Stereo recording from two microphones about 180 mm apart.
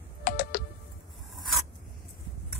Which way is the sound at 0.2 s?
55° left (ahead or behind).